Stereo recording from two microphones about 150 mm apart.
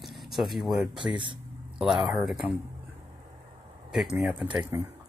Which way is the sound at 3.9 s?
Centre (ahead or behind).